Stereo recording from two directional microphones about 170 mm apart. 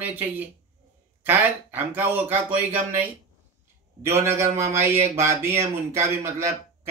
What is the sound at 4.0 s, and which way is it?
Speech, 15° right (ahead or behind).